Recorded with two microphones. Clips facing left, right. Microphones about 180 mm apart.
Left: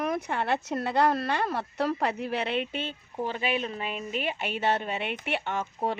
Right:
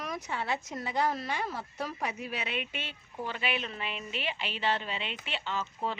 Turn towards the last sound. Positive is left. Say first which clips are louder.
# left 4 dB
turn(degrees=60)  # may be behind; listen again after turning